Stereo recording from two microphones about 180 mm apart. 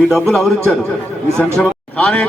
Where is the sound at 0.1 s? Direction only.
Centre (ahead or behind).